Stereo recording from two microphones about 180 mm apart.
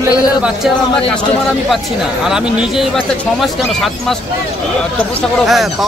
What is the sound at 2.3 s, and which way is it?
Speech, 5° right (ahead or behind).